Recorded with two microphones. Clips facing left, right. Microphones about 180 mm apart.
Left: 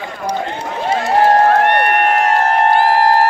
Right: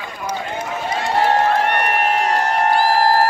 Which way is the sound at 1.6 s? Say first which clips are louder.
Left 5 dB; 65° left (ahead or behind).